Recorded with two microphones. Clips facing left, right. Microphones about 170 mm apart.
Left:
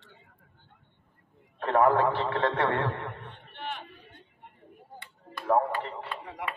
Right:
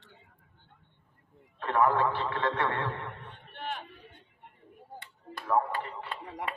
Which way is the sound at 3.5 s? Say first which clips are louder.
Even; 45° right (ahead or behind).